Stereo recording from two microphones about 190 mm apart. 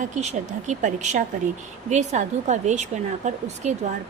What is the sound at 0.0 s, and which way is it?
Speech, 35° right (ahead or behind).